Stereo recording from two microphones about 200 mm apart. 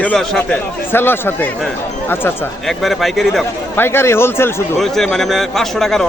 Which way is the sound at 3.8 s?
10° left (ahead or behind).